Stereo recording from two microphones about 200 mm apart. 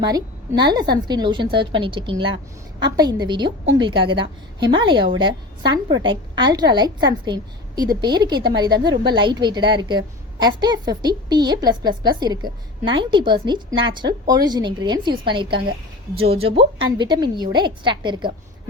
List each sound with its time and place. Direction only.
0.1 s a woman's voice: 20° right (ahead or behind)